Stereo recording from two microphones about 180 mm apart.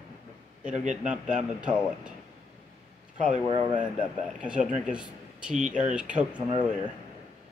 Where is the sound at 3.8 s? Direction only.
5° right (ahead or behind).